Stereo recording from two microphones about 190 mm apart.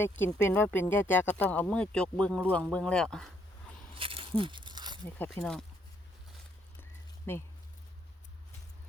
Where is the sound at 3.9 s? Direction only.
30° right (ahead or behind).